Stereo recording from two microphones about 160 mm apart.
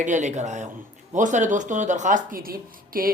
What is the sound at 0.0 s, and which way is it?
A woman's voice, 50° right (ahead or behind).